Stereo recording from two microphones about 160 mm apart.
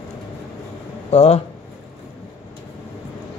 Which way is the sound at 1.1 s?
40° left (ahead or behind).